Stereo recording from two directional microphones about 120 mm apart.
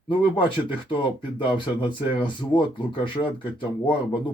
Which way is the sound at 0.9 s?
45° left (ahead or behind).